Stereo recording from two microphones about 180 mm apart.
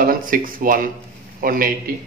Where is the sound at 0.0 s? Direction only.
50° right (ahead or behind).